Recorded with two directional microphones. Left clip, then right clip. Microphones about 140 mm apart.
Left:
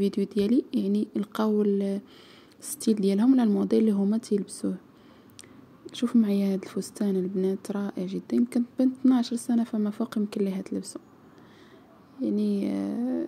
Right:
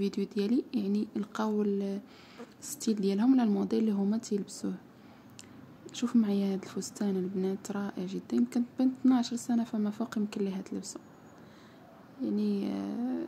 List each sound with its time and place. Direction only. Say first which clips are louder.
0.0 s speech: left 6 dB; 30° left (ahead or behind)
5.9 s speech: left 5 dB; 25° left (ahead or behind)
12.2 s speech: left 5 dB; 30° left (ahead or behind)